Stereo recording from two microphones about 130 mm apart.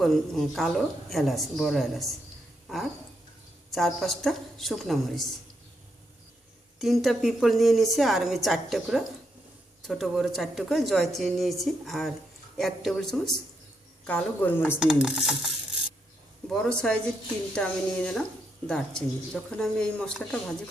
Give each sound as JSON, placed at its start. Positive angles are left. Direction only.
{"t": 0.0, "sound": "a woman's voice", "side_deg": 0}
{"t": 3.7, "sound": "a woman's voice", "side_deg": 0}
{"t": 6.7, "sound": "a woman's voice", "side_deg": 0}
{"t": 14.8, "sound": "a woman's voice", "side_deg": -5}